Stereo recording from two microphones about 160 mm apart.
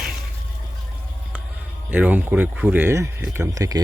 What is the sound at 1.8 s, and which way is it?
Speech, 10° right (ahead or behind).